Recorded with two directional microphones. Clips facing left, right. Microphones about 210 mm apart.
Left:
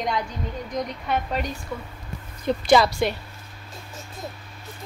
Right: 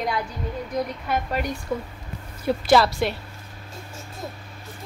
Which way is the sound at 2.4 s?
5° right (ahead or behind).